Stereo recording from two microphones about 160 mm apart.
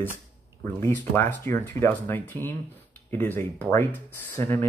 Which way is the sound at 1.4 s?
15° left (ahead or behind).